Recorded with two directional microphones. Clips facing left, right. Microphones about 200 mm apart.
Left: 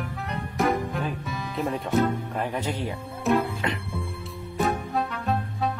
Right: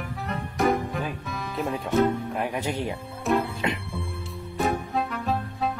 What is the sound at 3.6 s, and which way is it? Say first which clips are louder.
Music: right 1 dB; 20° right (ahead or behind).